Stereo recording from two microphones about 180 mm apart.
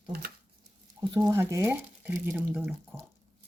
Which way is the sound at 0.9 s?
20° right (ahead or behind).